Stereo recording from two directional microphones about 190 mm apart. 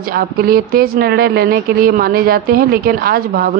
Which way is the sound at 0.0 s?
55° right (ahead or behind).